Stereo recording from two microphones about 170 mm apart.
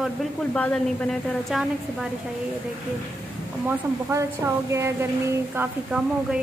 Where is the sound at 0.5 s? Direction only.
10° left (ahead or behind).